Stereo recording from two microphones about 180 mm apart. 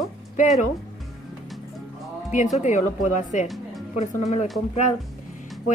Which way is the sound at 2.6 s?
40° left (ahead or behind).